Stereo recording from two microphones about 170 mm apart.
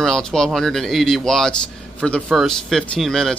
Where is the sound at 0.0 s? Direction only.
5° left (ahead or behind).